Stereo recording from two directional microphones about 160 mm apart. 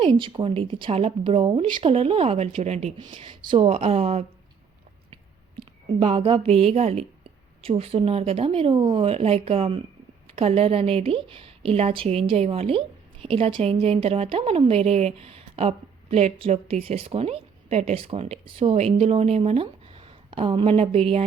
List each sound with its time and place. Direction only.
0.0 s a woman's voice: 30° right (ahead or behind)
5.5 s a woman's voice: 30° right (ahead or behind)